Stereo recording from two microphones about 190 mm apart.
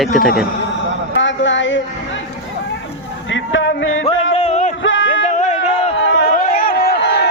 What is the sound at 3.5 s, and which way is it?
Music, 80° left.